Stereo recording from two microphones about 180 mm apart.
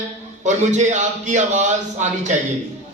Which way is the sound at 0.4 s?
40° right (ahead or behind).